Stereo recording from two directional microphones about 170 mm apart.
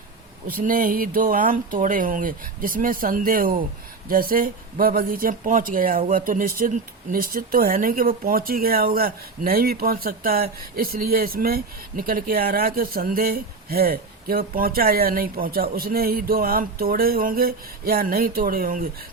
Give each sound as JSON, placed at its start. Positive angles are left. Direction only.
{"t": 0.4, "sound": "speech", "side_deg": -55}